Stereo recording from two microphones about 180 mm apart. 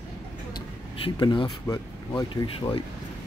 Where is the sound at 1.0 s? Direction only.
30° left (ahead or behind).